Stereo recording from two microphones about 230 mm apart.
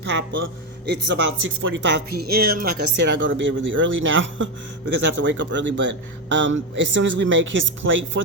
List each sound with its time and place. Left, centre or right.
0.0 s speech: right